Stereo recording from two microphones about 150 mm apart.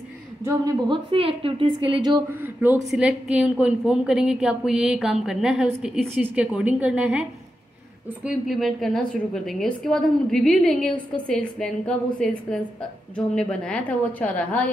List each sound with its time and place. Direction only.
0.5 s a woman's voice: 25° right (ahead or behind)
2.2 s a woman's voice: 15° right (ahead or behind); by 14.7 s 10° left (ahead or behind)